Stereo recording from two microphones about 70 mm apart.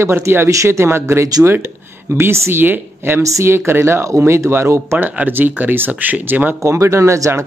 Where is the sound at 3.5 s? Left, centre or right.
Right.